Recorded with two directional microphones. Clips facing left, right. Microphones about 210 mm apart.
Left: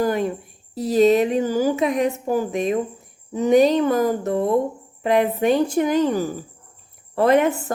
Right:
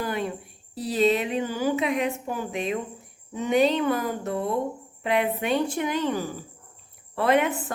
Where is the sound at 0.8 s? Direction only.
40° left (ahead or behind).